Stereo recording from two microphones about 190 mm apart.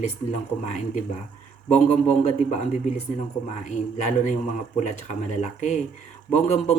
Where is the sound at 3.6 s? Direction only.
40° left (ahead or behind).